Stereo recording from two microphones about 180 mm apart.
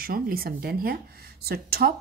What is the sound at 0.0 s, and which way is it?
A woman's voice, 55° right (ahead or behind).